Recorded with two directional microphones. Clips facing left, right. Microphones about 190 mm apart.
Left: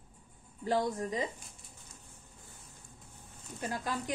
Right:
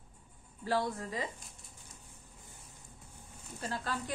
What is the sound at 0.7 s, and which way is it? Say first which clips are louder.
Speech: left 2 dB; 20° left (ahead or behind).